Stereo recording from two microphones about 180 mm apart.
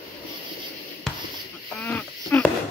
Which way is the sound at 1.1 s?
5° left (ahead or behind).